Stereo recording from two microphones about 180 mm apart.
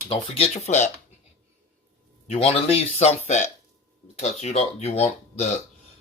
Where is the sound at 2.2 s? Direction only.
35° left (ahead or behind).